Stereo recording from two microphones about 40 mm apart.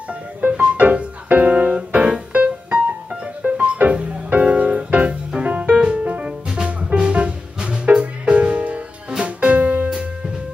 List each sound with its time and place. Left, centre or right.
0.1 s music: right
5.8 s music: right
6.0 s music: right
9.6 s music: right
9.8 s music: centre